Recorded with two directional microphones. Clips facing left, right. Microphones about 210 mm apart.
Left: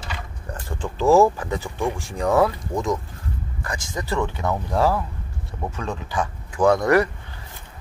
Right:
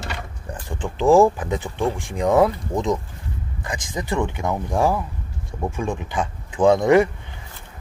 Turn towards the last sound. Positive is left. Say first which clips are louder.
# right 2 dB
turn(degrees=-20)  # may be behind; listen again after turning